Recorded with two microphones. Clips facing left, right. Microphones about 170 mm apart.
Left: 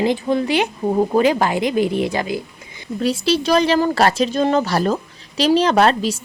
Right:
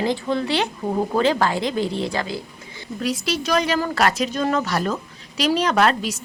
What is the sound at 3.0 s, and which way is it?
Speech, 30° left (ahead or behind).